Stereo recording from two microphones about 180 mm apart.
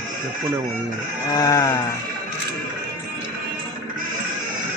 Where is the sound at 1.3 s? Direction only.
20° left (ahead or behind).